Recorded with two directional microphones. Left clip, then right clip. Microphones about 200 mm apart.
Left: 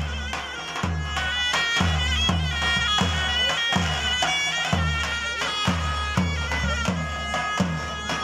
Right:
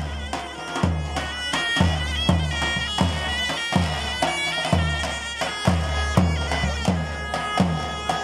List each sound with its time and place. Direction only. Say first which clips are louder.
1.4 s bagpipes: even; 30° right (ahead or behind)